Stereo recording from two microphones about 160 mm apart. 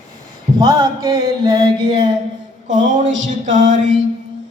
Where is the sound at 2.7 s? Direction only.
50° right (ahead or behind).